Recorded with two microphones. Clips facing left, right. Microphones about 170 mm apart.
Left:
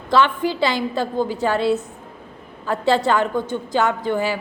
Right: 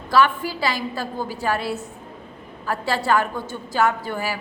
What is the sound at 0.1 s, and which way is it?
A woman's voice, 20° left (ahead or behind).